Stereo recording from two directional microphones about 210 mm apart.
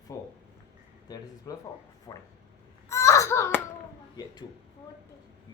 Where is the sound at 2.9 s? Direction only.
15° left (ahead or behind).